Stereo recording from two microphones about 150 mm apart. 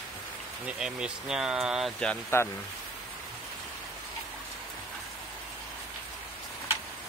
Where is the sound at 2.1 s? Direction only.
15° left (ahead or behind).